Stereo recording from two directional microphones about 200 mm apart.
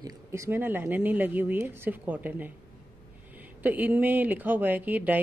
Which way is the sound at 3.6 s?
10° right (ahead or behind).